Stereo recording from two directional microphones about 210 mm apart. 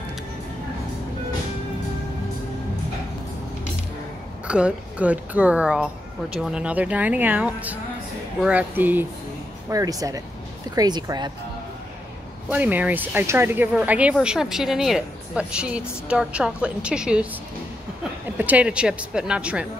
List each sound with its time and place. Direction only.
4.5 s speech: 5° right (ahead or behind)
12.4 s speech: 5° right (ahead or behind)
18.4 s speech: 5° right (ahead or behind)